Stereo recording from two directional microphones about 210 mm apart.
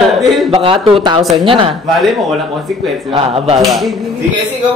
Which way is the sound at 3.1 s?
30° right (ahead or behind).